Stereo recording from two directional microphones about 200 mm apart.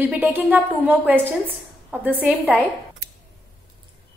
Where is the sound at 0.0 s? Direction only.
10° right (ahead or behind).